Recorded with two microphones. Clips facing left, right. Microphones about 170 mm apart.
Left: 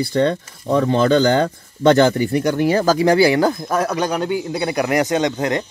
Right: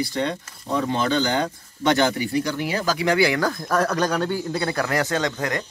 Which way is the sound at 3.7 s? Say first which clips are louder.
Left 2 dB; 10° left (ahead or behind).